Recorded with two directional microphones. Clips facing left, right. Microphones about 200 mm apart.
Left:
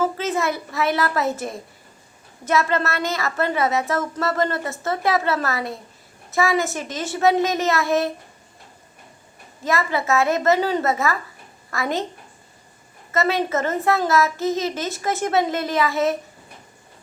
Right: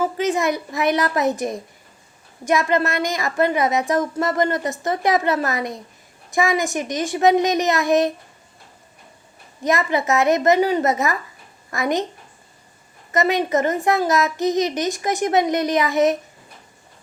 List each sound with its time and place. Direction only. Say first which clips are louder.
0.0 s a child's voice: right 2 dB; 15° right (ahead or behind)
9.6 s a child's voice: right 2 dB; 20° right (ahead or behind)
13.1 s a child's voice: right 2 dB; 15° right (ahead or behind)